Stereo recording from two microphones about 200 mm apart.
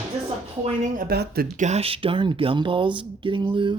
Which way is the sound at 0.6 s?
45° right (ahead or behind).